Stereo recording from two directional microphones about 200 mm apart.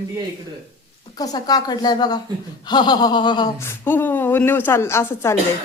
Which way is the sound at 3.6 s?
10° left (ahead or behind).